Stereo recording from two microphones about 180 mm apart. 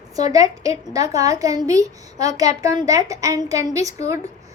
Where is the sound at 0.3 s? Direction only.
20° right (ahead or behind).